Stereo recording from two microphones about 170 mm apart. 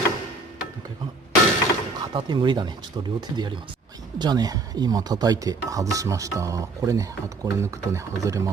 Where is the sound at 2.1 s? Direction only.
25° right (ahead or behind).